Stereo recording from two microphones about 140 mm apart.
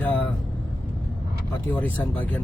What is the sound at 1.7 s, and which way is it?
Speech, 10° left (ahead or behind).